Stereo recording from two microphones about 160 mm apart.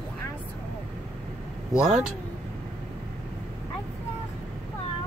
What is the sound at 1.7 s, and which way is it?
Speech, 5° right (ahead or behind).